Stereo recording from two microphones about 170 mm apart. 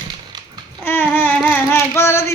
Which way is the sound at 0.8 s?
15° left (ahead or behind).